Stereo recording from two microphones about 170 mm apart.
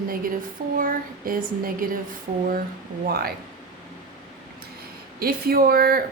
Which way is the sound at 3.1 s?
65° right (ahead or behind).